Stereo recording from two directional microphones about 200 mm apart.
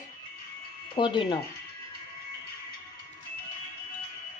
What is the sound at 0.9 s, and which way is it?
Speech, 25° left (ahead or behind).